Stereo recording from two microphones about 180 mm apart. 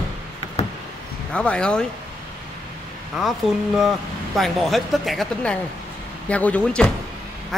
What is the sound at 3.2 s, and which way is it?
Speech, centre (ahead or behind).